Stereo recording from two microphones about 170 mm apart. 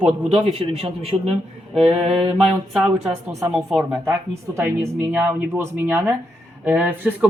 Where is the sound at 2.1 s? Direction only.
35° right (ahead or behind).